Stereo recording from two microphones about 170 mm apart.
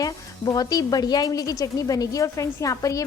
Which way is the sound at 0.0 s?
20° left (ahead or behind).